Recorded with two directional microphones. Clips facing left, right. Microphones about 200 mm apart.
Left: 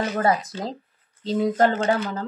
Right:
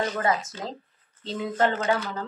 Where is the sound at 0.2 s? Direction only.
35° left (ahead or behind).